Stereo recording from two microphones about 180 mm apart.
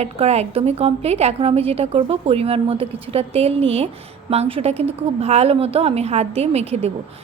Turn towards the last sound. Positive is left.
turn(degrees=-35)  # may be behind; listen again after turning